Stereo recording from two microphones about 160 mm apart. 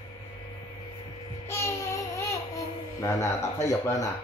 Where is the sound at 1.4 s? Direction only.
15° left (ahead or behind).